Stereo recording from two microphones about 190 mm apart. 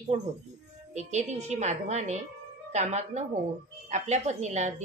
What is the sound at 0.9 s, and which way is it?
Speech, 35° right (ahead or behind).